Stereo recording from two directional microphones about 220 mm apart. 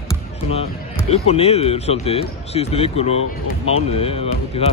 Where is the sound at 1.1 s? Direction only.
30° left (ahead or behind).